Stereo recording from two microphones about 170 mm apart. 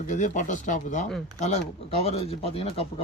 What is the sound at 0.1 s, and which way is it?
Speech, 45° left (ahead or behind).